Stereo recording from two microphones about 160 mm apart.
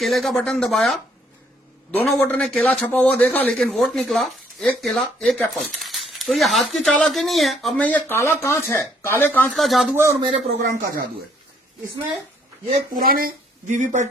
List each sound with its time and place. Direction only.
0.0 s speech: centre (ahead or behind)
2.0 s speech: 5° left (ahead or behind)
9.5 s speech: centre (ahead or behind)
9.9 s a man's voice: 15° right (ahead or behind)
10.2 s a man's voice: 35° right (ahead or behind)
10.7 s speech: 60° right (ahead or behind)
13.1 s speech: 65° right (ahead or behind)